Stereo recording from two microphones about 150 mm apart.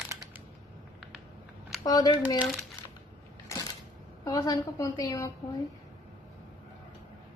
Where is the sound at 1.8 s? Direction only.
25° left (ahead or behind).